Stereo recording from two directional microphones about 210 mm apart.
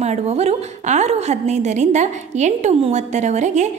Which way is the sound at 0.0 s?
30° right (ahead or behind).